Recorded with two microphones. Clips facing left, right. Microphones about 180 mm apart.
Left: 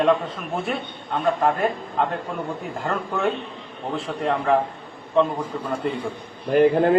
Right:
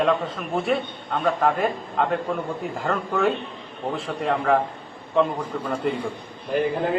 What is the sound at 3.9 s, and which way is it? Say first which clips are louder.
Speech: left 1 dB; centre (ahead or behind).